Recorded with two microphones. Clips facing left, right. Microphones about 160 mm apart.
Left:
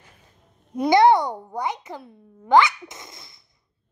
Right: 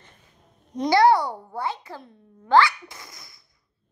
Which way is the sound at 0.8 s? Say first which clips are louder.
Left 2 dB; 20° left (ahead or behind).